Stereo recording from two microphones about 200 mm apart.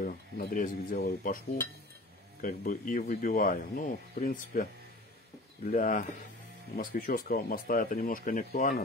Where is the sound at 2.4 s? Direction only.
40° left (ahead or behind).